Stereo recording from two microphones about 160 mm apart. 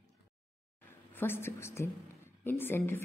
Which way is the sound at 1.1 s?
15° left (ahead or behind).